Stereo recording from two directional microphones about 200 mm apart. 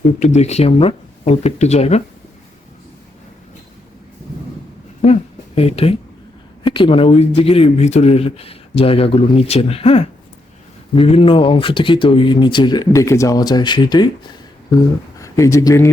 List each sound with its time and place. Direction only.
0.2 s speech: 35° left (ahead or behind)
5.0 s speech: 35° left (ahead or behind); by 15.9 s 15° left (ahead or behind)